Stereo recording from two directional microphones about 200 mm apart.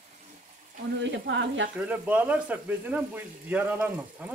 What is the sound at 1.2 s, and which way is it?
Speech, 65° right (ahead or behind).